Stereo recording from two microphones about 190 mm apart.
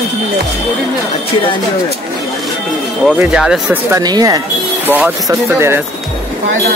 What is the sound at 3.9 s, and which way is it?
Speech, 20° right (ahead or behind).